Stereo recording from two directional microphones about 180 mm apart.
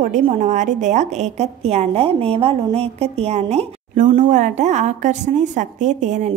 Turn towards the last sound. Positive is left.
turn(degrees=-40)  # may be behind; listen again after turning